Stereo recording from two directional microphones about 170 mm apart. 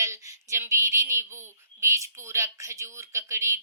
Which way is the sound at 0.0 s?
15° right (ahead or behind).